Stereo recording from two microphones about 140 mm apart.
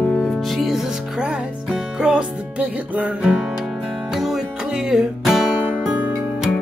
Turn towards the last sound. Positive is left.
turn(degrees=-5)  # may be behind; listen again after turning